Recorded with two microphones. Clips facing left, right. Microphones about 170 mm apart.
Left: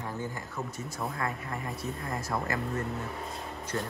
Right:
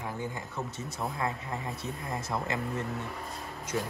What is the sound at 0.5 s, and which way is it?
Speech, centre (ahead or behind).